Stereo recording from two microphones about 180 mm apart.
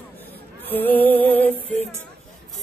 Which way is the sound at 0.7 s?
10° left (ahead or behind).